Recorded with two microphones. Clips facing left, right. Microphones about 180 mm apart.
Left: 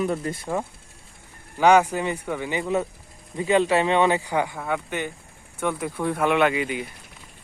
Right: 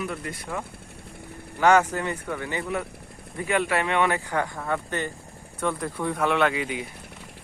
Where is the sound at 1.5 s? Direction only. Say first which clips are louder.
Left 2 dB; 15° left (ahead or behind).